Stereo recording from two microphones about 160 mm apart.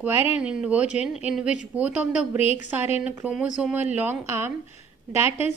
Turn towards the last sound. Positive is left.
turn(degrees=-15)  # may be behind; listen again after turning